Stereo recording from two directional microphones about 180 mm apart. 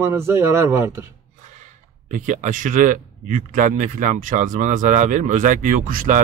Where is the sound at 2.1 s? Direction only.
45° right (ahead or behind).